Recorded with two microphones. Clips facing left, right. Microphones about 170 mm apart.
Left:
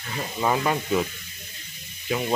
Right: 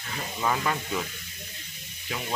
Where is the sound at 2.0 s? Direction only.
25° left (ahead or behind).